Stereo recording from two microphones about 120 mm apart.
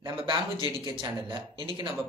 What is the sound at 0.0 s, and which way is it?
A man's voice, 45° right (ahead or behind).